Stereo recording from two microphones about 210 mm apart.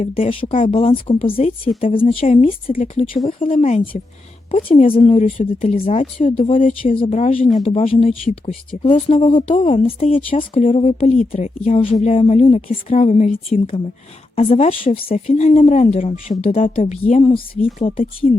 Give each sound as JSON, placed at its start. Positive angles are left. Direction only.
{"t": 0.0, "sound": "speech", "side_deg": 30}